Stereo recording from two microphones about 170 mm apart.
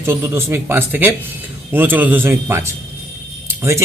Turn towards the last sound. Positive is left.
turn(degrees=-15)  # may be behind; listen again after turning